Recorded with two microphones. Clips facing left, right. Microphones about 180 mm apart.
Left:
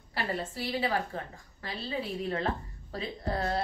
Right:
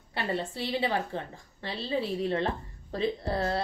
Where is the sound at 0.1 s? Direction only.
25° right (ahead or behind).